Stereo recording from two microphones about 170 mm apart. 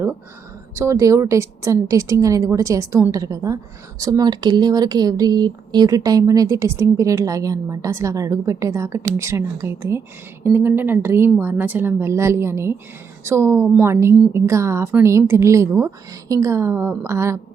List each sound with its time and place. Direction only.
0.8 s a woman's voice: 15° right (ahead or behind)